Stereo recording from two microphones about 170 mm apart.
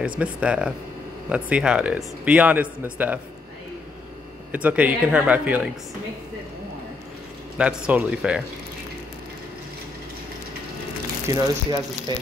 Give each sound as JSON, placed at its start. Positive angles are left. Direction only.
{"t": 0.0, "sound": "speech", "side_deg": -5}
{"t": 4.5, "sound": "speech", "side_deg": -10}
{"t": 7.5, "sound": "speech", "side_deg": -10}
{"t": 11.2, "sound": "speech", "side_deg": -20}